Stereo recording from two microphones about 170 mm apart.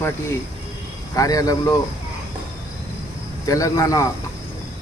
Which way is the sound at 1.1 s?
20° left (ahead or behind).